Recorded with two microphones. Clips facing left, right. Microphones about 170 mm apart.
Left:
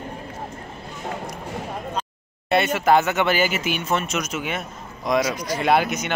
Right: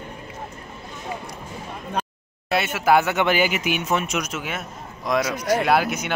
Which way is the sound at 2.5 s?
5° right (ahead or behind).